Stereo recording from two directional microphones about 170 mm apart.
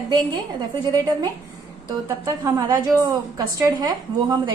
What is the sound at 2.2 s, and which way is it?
A woman's voice, 20° right (ahead or behind).